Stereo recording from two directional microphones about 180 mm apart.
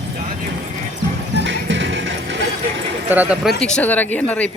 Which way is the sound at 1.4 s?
90° right.